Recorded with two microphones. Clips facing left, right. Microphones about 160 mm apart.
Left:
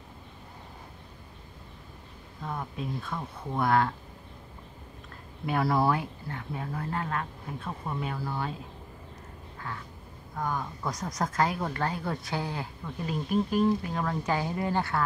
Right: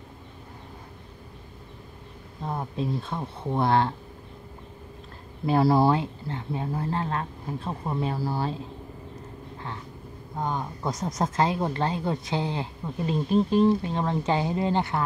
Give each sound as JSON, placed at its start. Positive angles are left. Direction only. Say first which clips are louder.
{"t": 2.4, "sound": "speech", "louder": "right 5 dB", "side_deg": -30}
{"t": 5.5, "sound": "speech", "louder": "right 5 dB", "side_deg": -30}
{"t": 10.3, "sound": "speech", "louder": "right 2 dB", "side_deg": -25}